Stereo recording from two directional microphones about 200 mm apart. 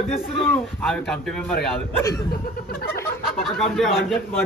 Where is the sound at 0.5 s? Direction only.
5° left (ahead or behind).